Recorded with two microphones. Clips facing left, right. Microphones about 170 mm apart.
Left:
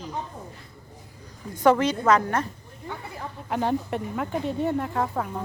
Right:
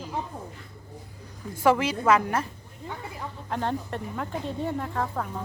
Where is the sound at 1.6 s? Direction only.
5° right (ahead or behind).